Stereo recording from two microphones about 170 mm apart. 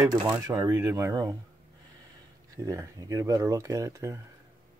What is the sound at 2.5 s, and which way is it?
A man's voice, 20° right (ahead or behind).